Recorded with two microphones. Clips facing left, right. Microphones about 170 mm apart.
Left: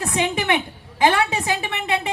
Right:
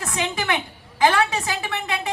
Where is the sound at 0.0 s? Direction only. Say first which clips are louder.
Left 4 dB; 20° left (ahead or behind).